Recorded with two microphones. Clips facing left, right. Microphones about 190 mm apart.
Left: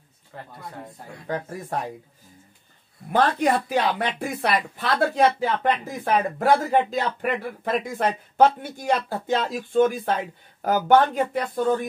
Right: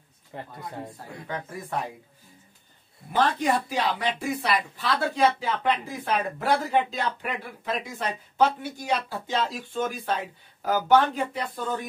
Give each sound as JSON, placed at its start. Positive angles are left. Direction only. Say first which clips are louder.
{"t": 0.3, "sound": "speech", "louder": "right 2 dB", "side_deg": -20}
{"t": 1.2, "sound": "speech", "louder": "left 5 dB", "side_deg": 40}
{"t": 3.3, "sound": "speech", "louder": "left 3 dB", "side_deg": 55}